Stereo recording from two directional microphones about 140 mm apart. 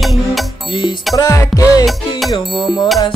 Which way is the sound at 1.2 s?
25° left (ahead or behind).